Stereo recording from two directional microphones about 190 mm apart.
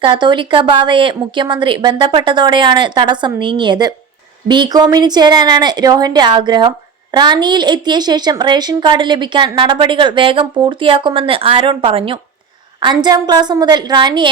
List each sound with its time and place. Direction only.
0.0 s speech: 25° right (ahead or behind)